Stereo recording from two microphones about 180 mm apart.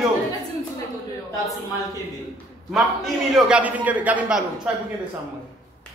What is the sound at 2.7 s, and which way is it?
A man's voice, centre (ahead or behind).